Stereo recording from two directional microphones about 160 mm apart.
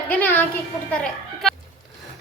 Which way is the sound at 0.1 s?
10° left (ahead or behind).